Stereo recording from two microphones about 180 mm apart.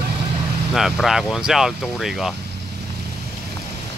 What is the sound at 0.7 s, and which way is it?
Speech, centre (ahead or behind).